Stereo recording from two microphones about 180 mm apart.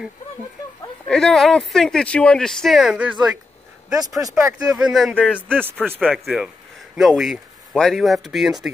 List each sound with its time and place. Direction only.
1.0 s speech: centre (ahead or behind)
4.2 s speech: 15° right (ahead or behind)
4.7 s speech: centre (ahead or behind)